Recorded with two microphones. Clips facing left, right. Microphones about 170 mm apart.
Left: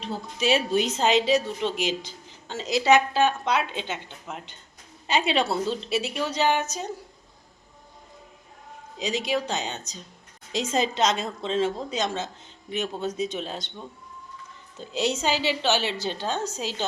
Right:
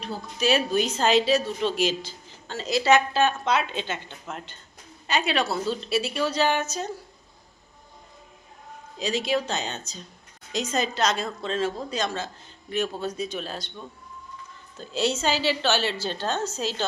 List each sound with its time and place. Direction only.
0.0 s a woman's voice: 25° left (ahead or behind)
5.0 s a woman's voice: 25° left (ahead or behind)
9.0 s a woman's voice: 20° left (ahead or behind)
10.5 s a woman's voice: 25° left (ahead or behind)